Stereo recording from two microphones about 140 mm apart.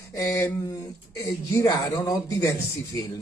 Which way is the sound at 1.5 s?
25° left (ahead or behind).